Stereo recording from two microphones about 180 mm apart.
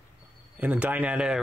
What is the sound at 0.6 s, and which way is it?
Speech, 10° right (ahead or behind).